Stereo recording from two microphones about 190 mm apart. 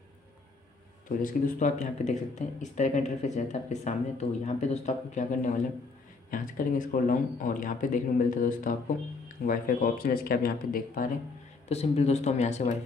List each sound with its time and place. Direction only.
1.0 s speech: 40° left (ahead or behind)
11.7 s speech: 35° left (ahead or behind)